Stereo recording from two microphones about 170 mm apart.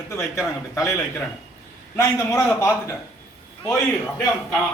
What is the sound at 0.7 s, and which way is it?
A man's voice, 20° left (ahead or behind).